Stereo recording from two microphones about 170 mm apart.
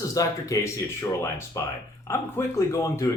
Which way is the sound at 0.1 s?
20° left (ahead or behind).